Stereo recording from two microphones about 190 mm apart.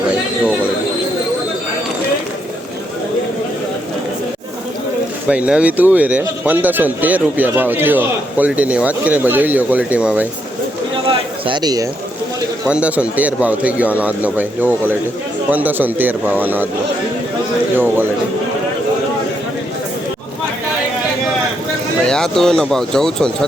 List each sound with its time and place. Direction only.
5.3 s a man's voice: 5° right (ahead or behind)
11.1 s a sound: 25° right (ahead or behind)
12.6 s a man's voice: 5° right (ahead or behind)
17.7 s a man's voice: 10° right (ahead or behind)
22.0 s speech: 5° left (ahead or behind)